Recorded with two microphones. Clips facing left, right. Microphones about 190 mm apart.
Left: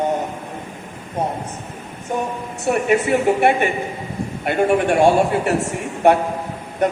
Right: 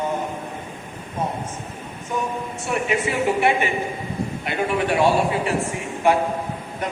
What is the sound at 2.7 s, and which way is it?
A man's voice, 50° left (ahead or behind).